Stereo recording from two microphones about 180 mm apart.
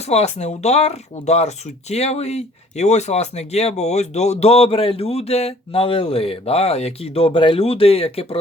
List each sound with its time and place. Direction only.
0.0 s speech: 35° left (ahead or behind)